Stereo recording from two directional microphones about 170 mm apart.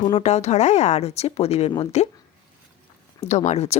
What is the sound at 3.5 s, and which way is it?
Speech, 40° left (ahead or behind).